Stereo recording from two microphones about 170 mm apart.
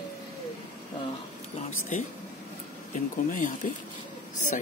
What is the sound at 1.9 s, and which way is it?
Speech, 45° left (ahead or behind).